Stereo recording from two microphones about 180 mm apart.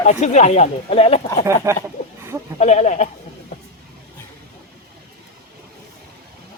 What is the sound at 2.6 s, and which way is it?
Speech, 40° left (ahead or behind).